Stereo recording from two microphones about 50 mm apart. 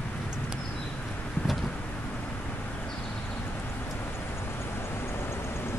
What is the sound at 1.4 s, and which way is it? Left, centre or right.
Vehicle, centre.